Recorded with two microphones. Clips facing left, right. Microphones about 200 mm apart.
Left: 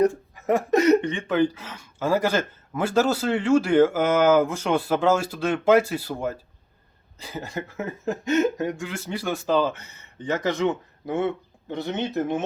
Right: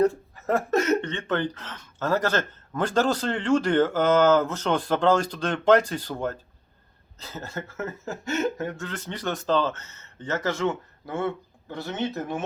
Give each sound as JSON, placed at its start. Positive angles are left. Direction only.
{"t": 0.0, "sound": "speech", "side_deg": 15}